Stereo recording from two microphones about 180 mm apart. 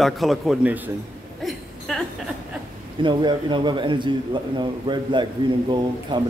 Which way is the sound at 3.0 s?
25° right (ahead or behind).